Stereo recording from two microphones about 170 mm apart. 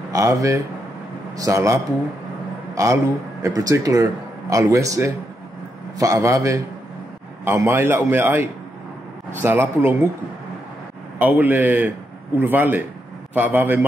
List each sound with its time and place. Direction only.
0.1 s a man's voice: 20° right (ahead or behind)
11.1 s a man's voice: 10° right (ahead or behind)